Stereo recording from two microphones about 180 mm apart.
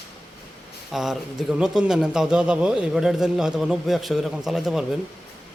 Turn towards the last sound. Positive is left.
turn(degrees=-5)  # may be behind; listen again after turning